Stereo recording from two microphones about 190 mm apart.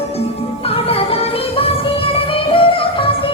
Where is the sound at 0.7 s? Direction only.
30° left (ahead or behind).